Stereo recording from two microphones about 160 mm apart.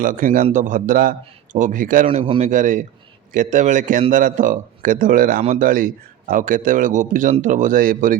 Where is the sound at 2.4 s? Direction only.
50° right (ahead or behind).